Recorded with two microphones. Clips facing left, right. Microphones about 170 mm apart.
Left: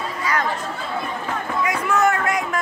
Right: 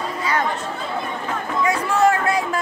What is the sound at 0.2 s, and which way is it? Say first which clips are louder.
Chatter: right 1 dB; 25° right (ahead or behind).